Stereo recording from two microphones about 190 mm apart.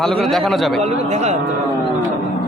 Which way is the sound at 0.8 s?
35° right (ahead or behind).